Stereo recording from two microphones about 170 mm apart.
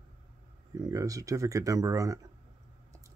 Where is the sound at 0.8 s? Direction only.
20° right (ahead or behind).